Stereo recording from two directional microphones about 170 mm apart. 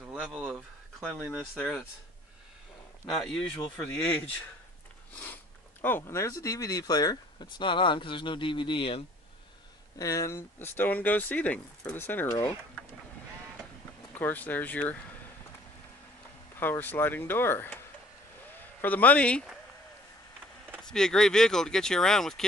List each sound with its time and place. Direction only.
0.1 s speech: 5° right (ahead or behind)
3.1 s speech: centre (ahead or behind); by 9.0 s 30° left (ahead or behind)
9.9 s speech: 20° left (ahead or behind)
14.1 s speech: 10° left (ahead or behind)
16.5 s speech: 10° left (ahead or behind)
18.8 s speech: 10° left (ahead or behind)
20.8 s speech: 5° left (ahead or behind)